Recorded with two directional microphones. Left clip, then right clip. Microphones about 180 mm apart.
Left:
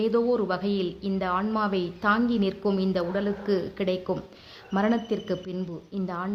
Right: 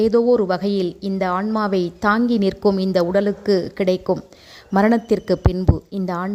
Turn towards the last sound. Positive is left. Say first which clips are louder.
# right 7 dB
turn(degrees=-45)  # may be behind; listen again after turning